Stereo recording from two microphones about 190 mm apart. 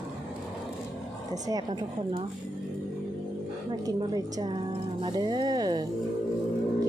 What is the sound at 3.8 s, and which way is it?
A woman's voice, 20° right (ahead or behind).